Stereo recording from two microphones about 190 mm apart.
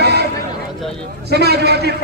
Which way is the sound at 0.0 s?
60° right (ahead or behind).